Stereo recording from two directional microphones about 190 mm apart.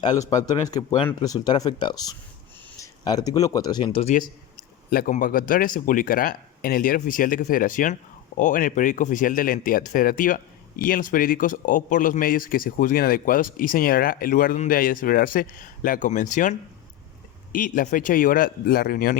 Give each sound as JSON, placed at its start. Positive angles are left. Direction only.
{"t": 0.0, "sound": "speech", "side_deg": 20}
{"t": 4.9, "sound": "speech", "side_deg": 45}